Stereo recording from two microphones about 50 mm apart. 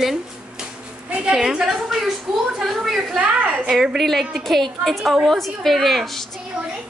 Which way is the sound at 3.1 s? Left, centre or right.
Right.